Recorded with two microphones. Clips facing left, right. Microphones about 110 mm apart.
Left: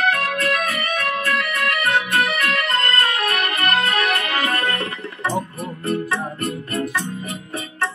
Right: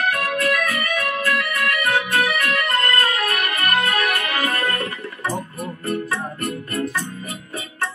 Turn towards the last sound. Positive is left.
turn(degrees=25)  # may be behind; listen again after turning